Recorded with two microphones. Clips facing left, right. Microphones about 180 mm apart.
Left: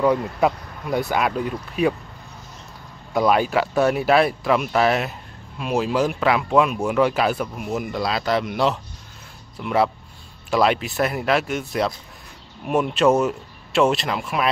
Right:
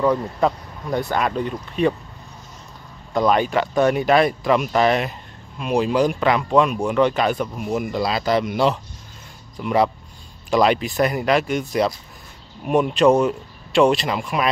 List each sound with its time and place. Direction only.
0.4 s speech: 10° left (ahead or behind)
3.1 s speech: 5° left (ahead or behind)